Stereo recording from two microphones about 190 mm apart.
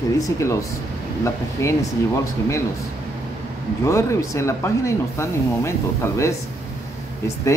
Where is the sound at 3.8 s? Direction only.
15° left (ahead or behind).